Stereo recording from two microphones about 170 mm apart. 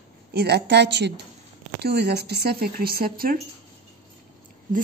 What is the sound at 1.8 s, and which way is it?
A woman's voice, 75° right (ahead or behind).